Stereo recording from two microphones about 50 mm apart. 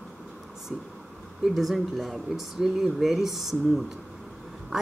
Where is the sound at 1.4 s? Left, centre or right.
Centre.